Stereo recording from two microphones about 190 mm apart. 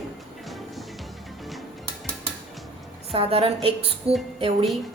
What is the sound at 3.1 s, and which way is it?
A woman's voice, 30° right (ahead or behind).